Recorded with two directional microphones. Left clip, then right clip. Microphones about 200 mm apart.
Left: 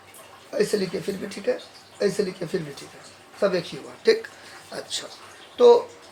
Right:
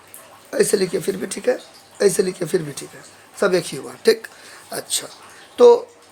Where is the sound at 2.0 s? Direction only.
50° right (ahead or behind).